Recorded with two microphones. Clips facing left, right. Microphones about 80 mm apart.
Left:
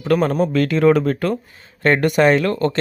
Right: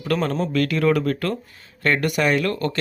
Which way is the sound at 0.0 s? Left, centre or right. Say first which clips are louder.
Left 6 dB; left.